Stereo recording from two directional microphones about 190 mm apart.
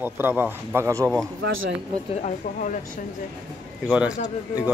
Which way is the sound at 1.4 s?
90° right.